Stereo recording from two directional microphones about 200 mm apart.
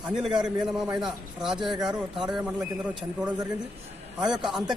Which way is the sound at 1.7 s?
20° right (ahead or behind).